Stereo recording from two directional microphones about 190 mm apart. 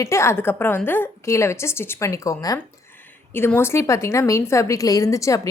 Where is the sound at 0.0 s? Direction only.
15° left (ahead or behind).